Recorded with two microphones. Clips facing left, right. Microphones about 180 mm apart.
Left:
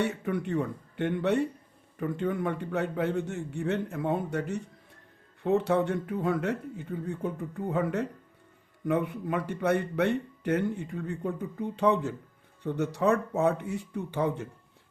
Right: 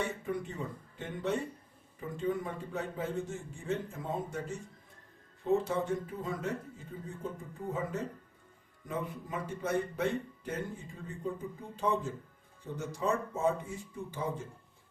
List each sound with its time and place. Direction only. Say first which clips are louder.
0.0 s speech: left 6 dB; 65° left (ahead or behind)